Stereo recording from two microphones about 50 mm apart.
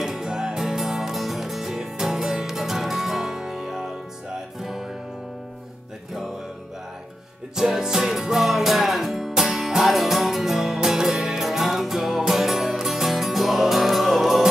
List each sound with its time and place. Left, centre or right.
0.0 s music: centre
7.5 s music: centre